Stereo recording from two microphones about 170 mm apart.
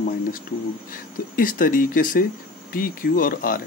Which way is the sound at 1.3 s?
55° left (ahead or behind).